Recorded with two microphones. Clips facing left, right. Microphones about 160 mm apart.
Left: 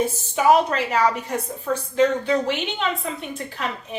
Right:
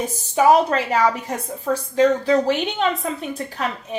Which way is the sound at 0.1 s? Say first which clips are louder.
Right 2 dB; 35° right (ahead or behind).